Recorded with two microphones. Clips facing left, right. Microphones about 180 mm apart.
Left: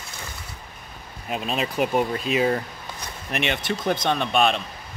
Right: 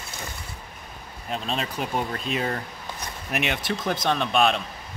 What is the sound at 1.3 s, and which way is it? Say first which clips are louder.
Speech: left 3 dB; 10° left (ahead or behind).